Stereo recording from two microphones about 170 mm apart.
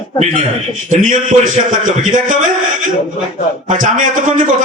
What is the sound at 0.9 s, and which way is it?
A man's voice, 50° right (ahead or behind).